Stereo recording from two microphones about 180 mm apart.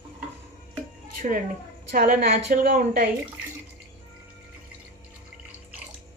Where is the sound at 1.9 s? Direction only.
50° right (ahead or behind).